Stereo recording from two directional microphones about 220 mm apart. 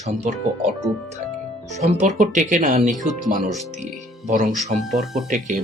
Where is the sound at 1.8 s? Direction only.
30° right (ahead or behind).